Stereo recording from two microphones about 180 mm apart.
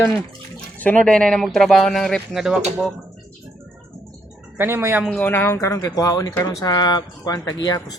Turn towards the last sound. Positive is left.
turn(degrees=20)  # may be behind; listen again after turning